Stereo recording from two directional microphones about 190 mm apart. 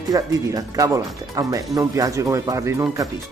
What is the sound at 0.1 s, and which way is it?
Speech, 20° right (ahead or behind).